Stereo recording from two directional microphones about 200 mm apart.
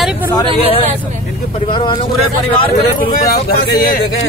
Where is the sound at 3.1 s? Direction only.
45° left (ahead or behind).